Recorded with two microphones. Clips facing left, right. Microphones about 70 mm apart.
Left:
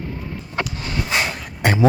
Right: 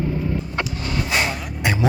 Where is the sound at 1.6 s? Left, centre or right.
Left.